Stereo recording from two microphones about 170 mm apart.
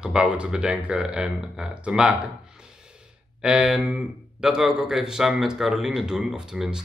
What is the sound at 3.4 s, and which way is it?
Speech, 5° right (ahead or behind).